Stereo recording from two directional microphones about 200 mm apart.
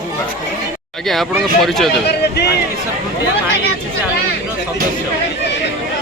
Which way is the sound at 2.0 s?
55° left (ahead or behind).